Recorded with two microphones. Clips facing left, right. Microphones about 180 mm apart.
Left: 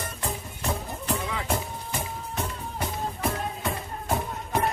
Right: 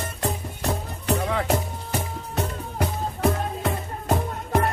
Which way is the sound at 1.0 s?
65° right (ahead or behind).